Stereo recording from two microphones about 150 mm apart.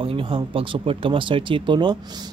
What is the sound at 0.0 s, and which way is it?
Speech, 35° right (ahead or behind).